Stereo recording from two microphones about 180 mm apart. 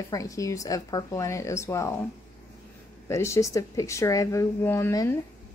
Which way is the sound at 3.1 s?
15° left (ahead or behind).